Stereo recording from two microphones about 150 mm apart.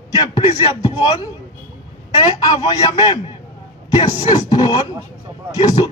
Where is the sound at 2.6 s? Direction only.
30° left (ahead or behind).